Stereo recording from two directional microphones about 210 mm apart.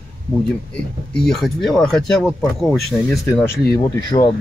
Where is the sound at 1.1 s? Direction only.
Centre (ahead or behind).